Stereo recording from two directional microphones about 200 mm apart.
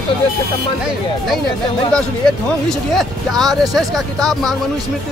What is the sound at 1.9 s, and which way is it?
A man's voice, 5° left (ahead or behind).